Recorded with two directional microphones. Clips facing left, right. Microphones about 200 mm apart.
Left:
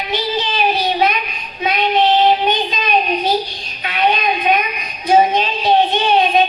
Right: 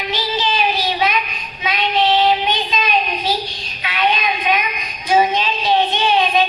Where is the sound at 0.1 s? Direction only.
55° left (ahead or behind).